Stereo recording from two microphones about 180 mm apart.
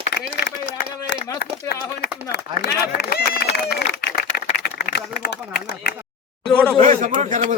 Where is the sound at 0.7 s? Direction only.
90° left.